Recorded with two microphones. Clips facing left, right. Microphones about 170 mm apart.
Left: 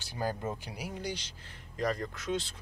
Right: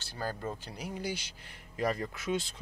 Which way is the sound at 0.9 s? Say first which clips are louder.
Right 3 dB; 5° right (ahead or behind).